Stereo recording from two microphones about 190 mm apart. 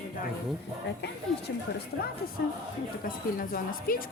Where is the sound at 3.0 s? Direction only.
45° left (ahead or behind).